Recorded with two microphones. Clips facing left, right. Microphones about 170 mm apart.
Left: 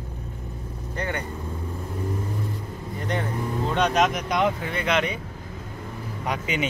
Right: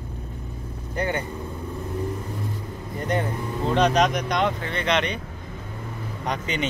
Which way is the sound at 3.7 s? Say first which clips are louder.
Right 2 dB; centre (ahead or behind).